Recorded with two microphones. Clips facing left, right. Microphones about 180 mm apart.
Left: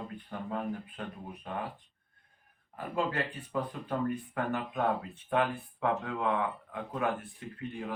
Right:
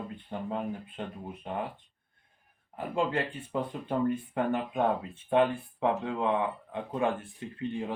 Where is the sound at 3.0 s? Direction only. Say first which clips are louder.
Right 3 dB; 25° right (ahead or behind).